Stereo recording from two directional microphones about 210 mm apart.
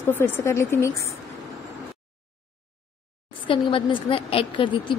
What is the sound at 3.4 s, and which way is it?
A woman's voice, 25° left (ahead or behind).